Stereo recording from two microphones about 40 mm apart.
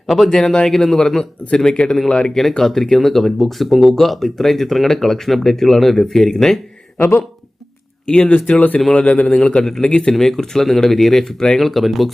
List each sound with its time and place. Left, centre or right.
0.3 s speech: centre
0.9 s a man's voice: centre
2.3 s speech: centre
8.0 s a man's voice: left
9.2 s a man's voice: centre
11.6 s speech: centre